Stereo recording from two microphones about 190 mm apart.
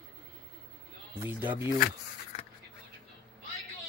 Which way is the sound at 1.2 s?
10° right (ahead or behind).